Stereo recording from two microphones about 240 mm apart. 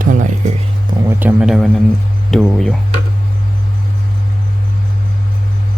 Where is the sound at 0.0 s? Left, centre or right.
Right.